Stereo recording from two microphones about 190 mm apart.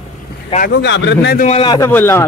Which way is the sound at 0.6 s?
60° left (ahead or behind).